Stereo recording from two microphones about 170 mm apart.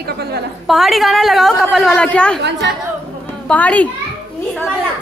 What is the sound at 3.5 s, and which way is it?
Speech, 10° left (ahead or behind).